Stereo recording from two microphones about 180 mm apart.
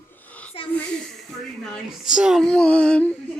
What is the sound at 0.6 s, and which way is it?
Wheeze, 30° left (ahead or behind).